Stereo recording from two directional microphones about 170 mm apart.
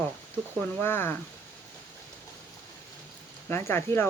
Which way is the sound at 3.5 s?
15° left (ahead or behind).